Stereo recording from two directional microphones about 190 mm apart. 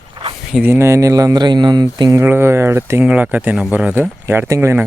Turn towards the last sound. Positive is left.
turn(degrees=-15)  # may be behind; listen again after turning